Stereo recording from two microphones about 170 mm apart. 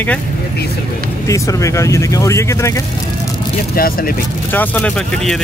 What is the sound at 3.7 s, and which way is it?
Speech, 60° left (ahead or behind).